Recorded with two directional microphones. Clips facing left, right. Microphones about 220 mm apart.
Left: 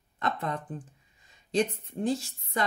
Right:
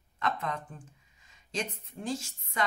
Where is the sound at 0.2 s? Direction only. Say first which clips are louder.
Left 2 dB; 35° left (ahead or behind).